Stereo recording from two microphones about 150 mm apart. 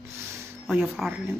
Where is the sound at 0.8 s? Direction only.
Centre (ahead or behind).